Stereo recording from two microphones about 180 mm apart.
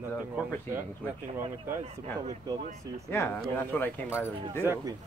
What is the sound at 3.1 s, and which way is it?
Speech, 15° left (ahead or behind).